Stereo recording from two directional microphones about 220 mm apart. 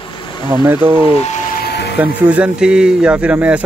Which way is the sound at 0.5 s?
10° right (ahead or behind).